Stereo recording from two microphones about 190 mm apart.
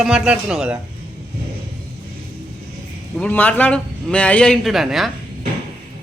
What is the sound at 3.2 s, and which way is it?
Speech, 10° left (ahead or behind).